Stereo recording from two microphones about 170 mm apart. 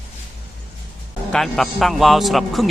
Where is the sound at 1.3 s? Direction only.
Centre (ahead or behind).